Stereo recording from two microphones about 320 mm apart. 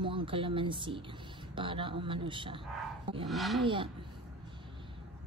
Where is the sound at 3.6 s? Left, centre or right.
Centre.